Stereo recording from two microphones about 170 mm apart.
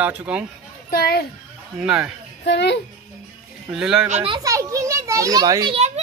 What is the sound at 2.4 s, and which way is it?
Speech, 85° left.